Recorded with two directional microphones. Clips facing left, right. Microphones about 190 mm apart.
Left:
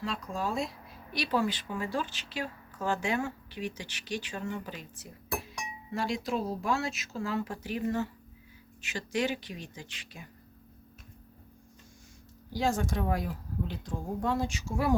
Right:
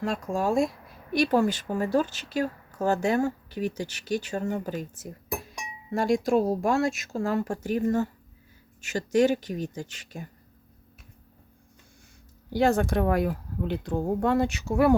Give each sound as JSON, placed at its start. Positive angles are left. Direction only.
{"t": 0.0, "sound": "a woman's voice", "side_deg": -45}
{"t": 12.5, "sound": "speech", "side_deg": -65}